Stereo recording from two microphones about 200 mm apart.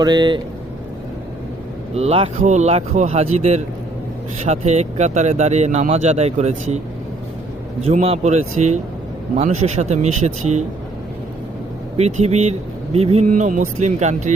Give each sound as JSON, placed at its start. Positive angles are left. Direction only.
{"t": 0.0, "sound": "speech", "side_deg": -20}
{"t": 2.0, "sound": "speech", "side_deg": -30}
{"t": 7.9, "sound": "speech", "side_deg": -30}
{"t": 11.9, "sound": "speech", "side_deg": -35}